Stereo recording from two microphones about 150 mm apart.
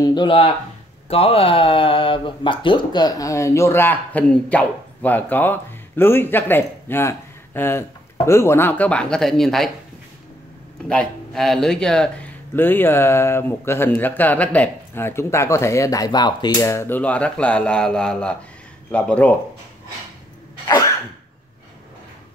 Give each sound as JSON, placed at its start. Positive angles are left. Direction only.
{"t": 0.0, "sound": "speech", "side_deg": 30}
{"t": 10.9, "sound": "speech", "side_deg": 5}
{"t": 20.6, "sound": "cough", "side_deg": 25}